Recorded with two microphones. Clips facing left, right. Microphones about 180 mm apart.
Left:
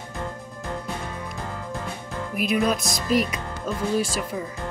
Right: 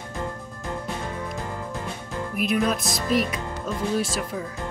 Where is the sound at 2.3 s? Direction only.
Centre (ahead or behind).